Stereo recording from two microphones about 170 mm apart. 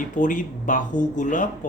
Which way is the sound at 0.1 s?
50° left (ahead or behind).